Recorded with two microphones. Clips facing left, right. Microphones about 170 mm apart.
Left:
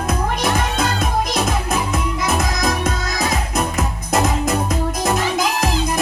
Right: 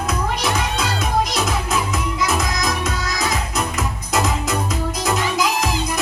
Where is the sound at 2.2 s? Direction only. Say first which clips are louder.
Even; 55° left (ahead or behind).